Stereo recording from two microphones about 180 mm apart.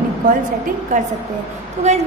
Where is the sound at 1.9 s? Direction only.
40° right (ahead or behind).